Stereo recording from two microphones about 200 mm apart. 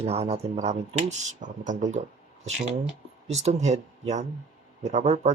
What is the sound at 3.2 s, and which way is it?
Speech, 35° right (ahead or behind).